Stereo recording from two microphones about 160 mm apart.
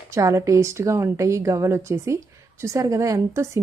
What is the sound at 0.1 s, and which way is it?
A woman's voice, 20° right (ahead or behind).